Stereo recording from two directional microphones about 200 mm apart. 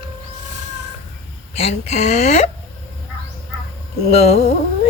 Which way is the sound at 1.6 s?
30° left (ahead or behind).